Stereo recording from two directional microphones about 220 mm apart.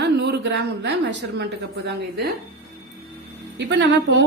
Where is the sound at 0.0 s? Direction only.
50° right (ahead or behind).